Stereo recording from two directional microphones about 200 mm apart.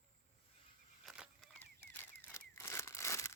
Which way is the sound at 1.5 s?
10° left (ahead or behind).